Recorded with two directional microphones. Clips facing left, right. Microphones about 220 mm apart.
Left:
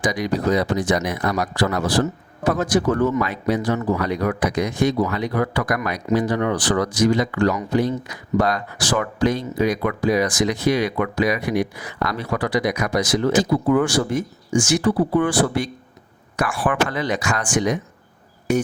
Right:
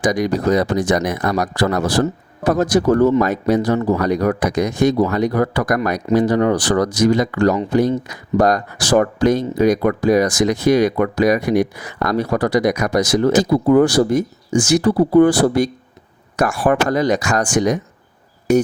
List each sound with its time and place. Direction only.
0.0 s speech: 45° right (ahead or behind)